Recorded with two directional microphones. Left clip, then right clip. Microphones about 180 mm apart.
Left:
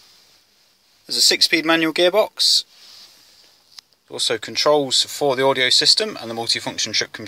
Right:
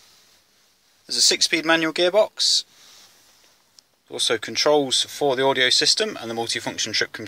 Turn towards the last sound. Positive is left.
turn(degrees=5)  # may be behind; listen again after turning